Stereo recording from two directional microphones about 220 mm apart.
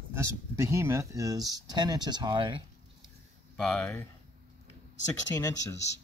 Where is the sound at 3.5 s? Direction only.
5° left (ahead or behind).